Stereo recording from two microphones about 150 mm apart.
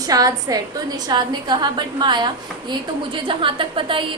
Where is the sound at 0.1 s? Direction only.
25° right (ahead or behind).